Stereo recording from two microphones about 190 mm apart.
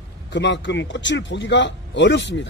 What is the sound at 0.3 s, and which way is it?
A man's voice, 70° left (ahead or behind).